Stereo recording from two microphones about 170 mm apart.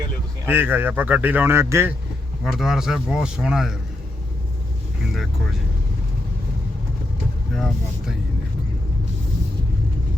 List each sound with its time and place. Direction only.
0.4 s speech: 10° right (ahead or behind)
2.4 s speech: centre (ahead or behind)
7.5 s speech: 5° left (ahead or behind)